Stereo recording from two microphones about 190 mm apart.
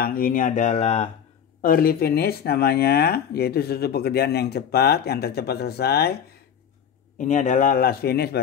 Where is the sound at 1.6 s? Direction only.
50° left (ahead or behind).